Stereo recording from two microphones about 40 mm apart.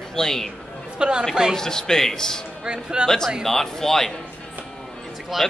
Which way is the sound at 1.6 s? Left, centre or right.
Centre.